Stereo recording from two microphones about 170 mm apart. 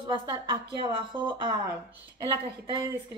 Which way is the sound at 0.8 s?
30° right (ahead or behind).